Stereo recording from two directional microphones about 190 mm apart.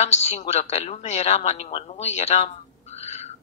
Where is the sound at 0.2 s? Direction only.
35° left (ahead or behind).